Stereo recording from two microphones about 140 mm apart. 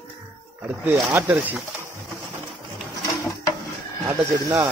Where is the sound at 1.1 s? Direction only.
15° right (ahead or behind).